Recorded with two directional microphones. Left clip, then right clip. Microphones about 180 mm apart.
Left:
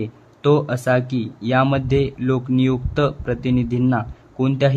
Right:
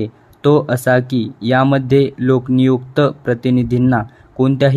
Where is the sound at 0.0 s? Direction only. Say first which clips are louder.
Right 4 dB; 20° right (ahead or behind).